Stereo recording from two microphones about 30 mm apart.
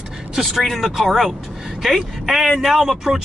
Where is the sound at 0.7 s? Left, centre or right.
Centre.